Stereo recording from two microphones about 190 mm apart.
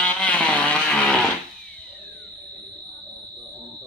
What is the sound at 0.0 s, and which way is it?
Vehicle, 5° left (ahead or behind).